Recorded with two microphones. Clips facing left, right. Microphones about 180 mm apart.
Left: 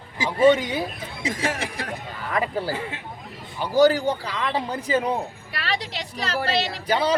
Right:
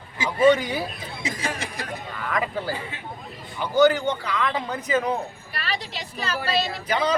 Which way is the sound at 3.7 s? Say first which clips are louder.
Left 1 dB; 35° left (ahead or behind).